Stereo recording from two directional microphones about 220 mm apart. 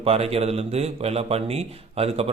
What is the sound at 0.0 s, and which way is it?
Speech, 25° right (ahead or behind).